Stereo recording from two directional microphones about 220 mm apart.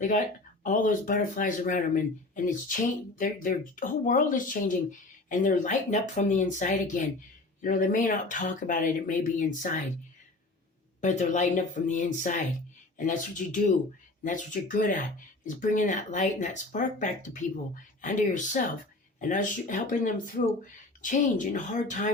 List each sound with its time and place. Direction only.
0.6 s speech: 35° left (ahead or behind)
11.0 s speech: 35° left (ahead or behind)